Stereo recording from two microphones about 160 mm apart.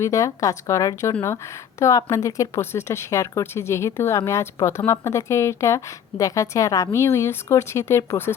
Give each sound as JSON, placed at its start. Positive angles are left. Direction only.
{"t": 0.0, "sound": "a woman's voice", "side_deg": 20}